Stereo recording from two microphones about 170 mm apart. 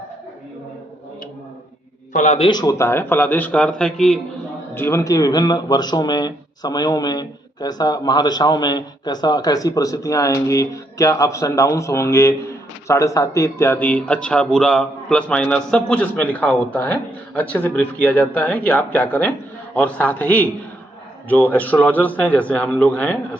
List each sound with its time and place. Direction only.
2.1 s a man's voice: 40° left (ahead or behind)
2.5 s a man's voice: 20° left (ahead or behind); by 4.2 s 5° left (ahead or behind)
4.7 s a man's voice: 15° left (ahead or behind)